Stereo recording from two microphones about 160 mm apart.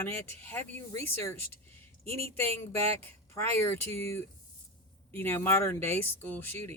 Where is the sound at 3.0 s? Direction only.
15° left (ahead or behind).